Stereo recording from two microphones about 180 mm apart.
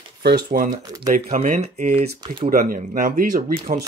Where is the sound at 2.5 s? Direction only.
50° right (ahead or behind).